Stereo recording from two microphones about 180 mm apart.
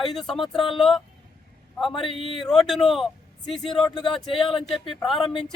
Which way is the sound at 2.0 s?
30° left (ahead or behind).